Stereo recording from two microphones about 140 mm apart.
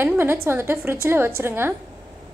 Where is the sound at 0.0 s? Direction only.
15° right (ahead or behind).